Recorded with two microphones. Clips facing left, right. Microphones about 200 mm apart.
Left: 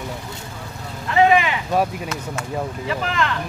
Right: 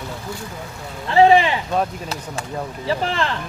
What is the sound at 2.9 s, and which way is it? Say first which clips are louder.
Speech: right 3 dB; 30° right (ahead or behind).